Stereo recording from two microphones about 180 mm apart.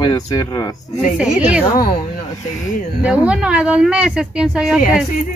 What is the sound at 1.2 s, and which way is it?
Speech, 5° right (ahead or behind).